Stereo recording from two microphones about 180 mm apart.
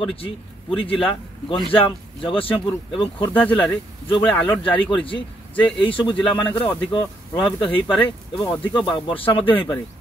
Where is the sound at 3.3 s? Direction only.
10° left (ahead or behind).